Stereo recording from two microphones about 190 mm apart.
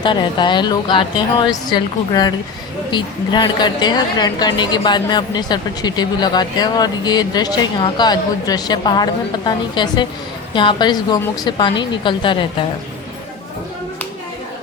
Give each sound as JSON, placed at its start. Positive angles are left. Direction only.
{"t": 0.0, "sound": "a woman's voice", "side_deg": 25}